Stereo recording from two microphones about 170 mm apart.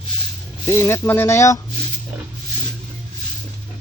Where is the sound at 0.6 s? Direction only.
15° left (ahead or behind).